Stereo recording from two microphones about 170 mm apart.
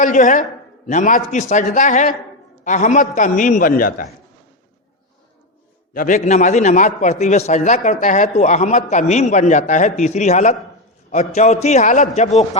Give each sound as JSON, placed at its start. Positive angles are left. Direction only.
{"t": 0.0, "sound": "a man's voice", "side_deg": 50}
{"t": 5.9, "sound": "a man's voice", "side_deg": 50}